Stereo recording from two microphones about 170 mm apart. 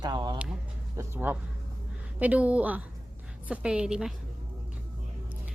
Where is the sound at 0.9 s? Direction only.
15° right (ahead or behind).